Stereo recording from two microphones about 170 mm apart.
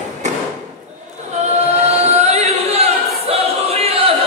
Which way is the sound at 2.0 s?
40° right (ahead or behind).